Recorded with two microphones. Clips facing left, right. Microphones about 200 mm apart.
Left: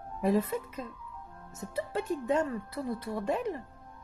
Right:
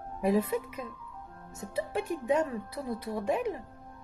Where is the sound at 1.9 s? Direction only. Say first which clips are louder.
Right 1 dB; 15° right (ahead or behind).